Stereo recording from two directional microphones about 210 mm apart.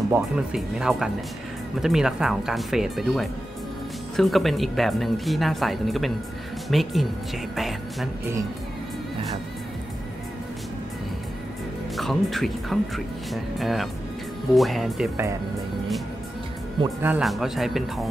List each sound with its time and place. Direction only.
0.1 s speech: 5° right (ahead or behind)
12.0 s speech: centre (ahead or behind)
16.8 s speech: 10° right (ahead or behind)